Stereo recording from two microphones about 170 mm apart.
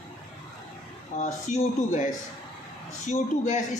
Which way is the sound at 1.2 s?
45° left (ahead or behind).